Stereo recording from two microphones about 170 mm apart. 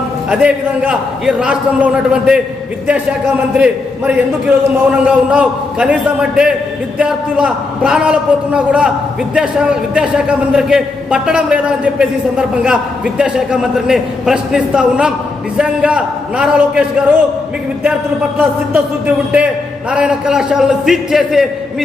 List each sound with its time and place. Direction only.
0.3 s a man's voice: 5° right (ahead or behind)
3.5 s a man's voice: 5° right (ahead or behind)
19.0 s a man's voice: 5° right (ahead or behind)